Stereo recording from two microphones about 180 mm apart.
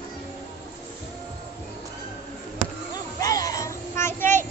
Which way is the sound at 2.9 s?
20° left (ahead or behind).